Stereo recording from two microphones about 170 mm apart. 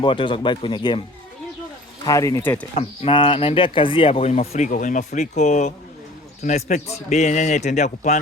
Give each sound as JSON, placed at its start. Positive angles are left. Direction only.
{"t": 0.0, "sound": "speech", "side_deg": 30}
{"t": 2.0, "sound": "speech", "side_deg": 20}
{"t": 2.7, "sound": "speech", "side_deg": 35}